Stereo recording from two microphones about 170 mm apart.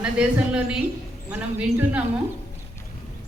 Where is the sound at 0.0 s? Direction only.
5° right (ahead or behind).